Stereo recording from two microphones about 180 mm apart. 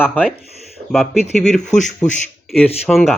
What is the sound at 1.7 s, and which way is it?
Speech, 40° left (ahead or behind).